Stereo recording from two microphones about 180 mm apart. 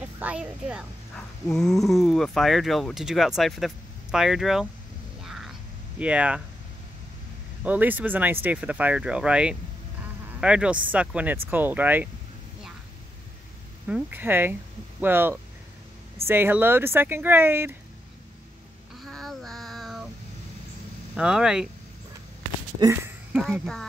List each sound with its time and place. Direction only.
0.0 s speech: 5° right (ahead or behind)
5.2 s a sound: centre (ahead or behind)
5.9 s speech: 5° right (ahead or behind)
7.6 s speech: 10° right (ahead or behind)
13.8 s speech: 10° right (ahead or behind)
18.9 s child singing: centre (ahead or behind)
21.2 s speech: 5° right (ahead or behind)
22.8 s speech: 15° right (ahead or behind)
23.3 s speech: centre (ahead or behind)